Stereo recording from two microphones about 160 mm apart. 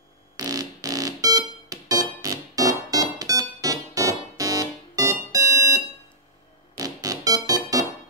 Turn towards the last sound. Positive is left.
turn(degrees=-20)  # may be behind; listen again after turning